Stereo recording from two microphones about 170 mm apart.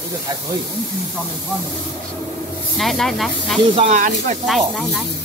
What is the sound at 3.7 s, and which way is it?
Speech, 40° right (ahead or behind).